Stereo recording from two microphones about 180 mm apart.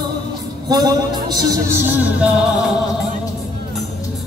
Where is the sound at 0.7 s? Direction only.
20° right (ahead or behind).